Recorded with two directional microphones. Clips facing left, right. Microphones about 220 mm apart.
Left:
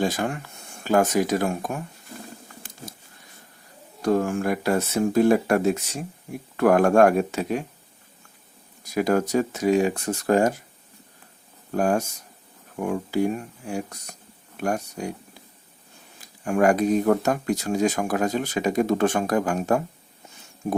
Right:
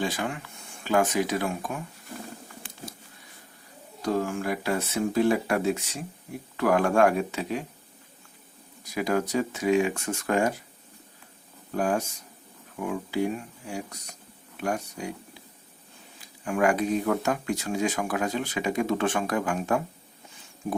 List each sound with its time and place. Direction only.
0.0 s speech: 45° left (ahead or behind)
4.0 s speech: 50° left (ahead or behind)
9.0 s speech: 45° left (ahead or behind)
11.7 s speech: 45° left (ahead or behind)
16.2 s speech: 45° left (ahead or behind)